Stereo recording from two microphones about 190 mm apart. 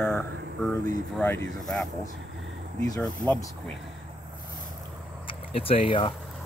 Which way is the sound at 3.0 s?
10° left (ahead or behind).